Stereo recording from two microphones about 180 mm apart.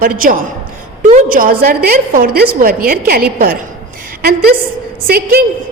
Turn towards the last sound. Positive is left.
turn(degrees=-55)  # may be behind; listen again after turning